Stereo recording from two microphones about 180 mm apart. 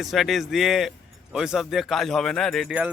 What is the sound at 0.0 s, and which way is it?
Speech, centre (ahead or behind).